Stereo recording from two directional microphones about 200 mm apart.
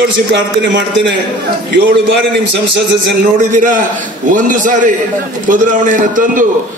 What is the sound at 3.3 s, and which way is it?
A man's voice, 40° right (ahead or behind).